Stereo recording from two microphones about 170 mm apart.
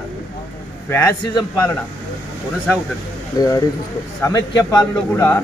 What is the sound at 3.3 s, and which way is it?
A man's voice, 20° left (ahead or behind).